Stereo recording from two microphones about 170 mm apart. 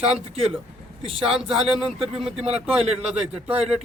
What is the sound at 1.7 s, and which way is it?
Speech, 35° right (ahead or behind).